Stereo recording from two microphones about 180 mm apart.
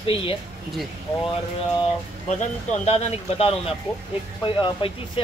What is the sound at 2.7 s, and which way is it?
Speech, 35° left (ahead or behind).